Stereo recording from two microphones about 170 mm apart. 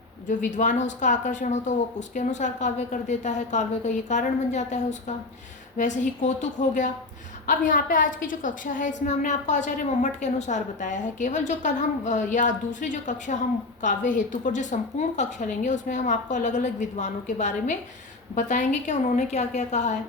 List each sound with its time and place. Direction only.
0.3 s a woman's voice: 45° left (ahead or behind)